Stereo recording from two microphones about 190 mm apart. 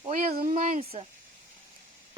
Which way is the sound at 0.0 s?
40° right (ahead or behind).